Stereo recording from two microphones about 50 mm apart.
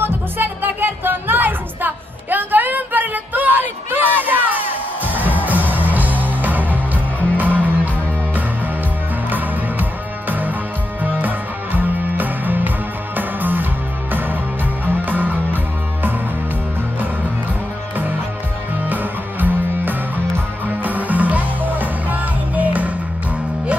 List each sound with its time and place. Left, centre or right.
0.0 s music: right
9.3 s music: right
18.9 s music: right